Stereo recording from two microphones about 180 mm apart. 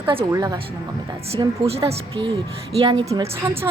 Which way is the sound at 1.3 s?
35° right (ahead or behind).